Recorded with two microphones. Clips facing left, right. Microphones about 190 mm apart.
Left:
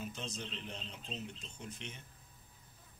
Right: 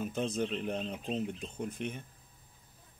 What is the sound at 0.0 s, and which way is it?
Speech, 55° right (ahead or behind).